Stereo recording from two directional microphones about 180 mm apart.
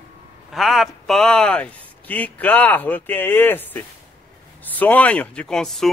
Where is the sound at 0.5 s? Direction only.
Centre (ahead or behind).